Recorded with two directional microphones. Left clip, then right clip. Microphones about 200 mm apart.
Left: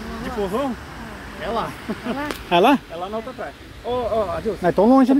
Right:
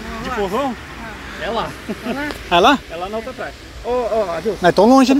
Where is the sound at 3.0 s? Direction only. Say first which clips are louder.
Right 3 dB; 35° right (ahead or behind).